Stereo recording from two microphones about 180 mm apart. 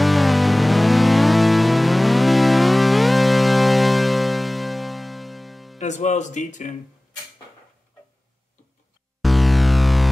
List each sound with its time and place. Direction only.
0.0 s music: centre (ahead or behind)
5.8 s speech: 40° left (ahead or behind)
9.2 s music: centre (ahead or behind)